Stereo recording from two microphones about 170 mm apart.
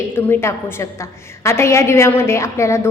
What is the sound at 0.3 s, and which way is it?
A woman's voice, 15° left (ahead or behind).